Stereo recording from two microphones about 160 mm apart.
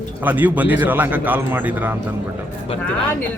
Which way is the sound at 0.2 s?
10° right (ahead or behind).